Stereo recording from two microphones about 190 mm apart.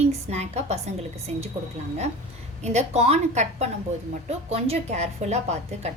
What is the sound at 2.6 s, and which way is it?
A woman's voice, 35° right (ahead or behind).